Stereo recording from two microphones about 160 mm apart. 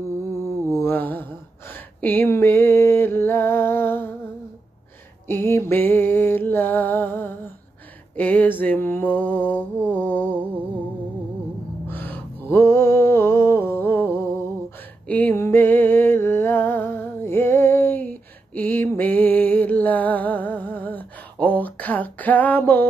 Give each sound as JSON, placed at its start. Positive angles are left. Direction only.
{"t": 0.7, "sound": "mantra", "side_deg": 10}
{"t": 2.0, "sound": "a sound", "side_deg": 10}
{"t": 5.3, "sound": "music", "side_deg": 10}
{"t": 8.2, "sound": "mantra", "side_deg": 10}
{"t": 11.9, "sound": "a sound", "side_deg": 10}
{"t": 15.0, "sound": "music", "side_deg": 10}